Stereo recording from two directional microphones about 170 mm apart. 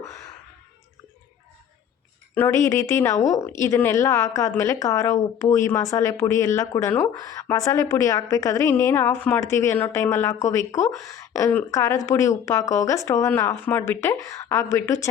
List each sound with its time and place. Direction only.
2.3 s a woman's voice: 15° left (ahead or behind)